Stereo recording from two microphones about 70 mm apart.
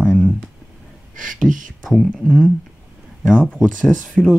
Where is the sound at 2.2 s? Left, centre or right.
Centre.